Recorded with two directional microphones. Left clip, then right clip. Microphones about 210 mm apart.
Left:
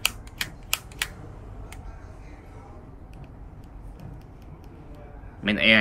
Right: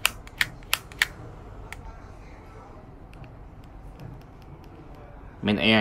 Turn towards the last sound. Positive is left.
turn(degrees=-20)  # may be behind; listen again after turning